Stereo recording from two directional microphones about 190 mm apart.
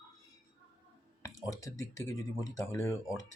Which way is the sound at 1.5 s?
15° left (ahead or behind).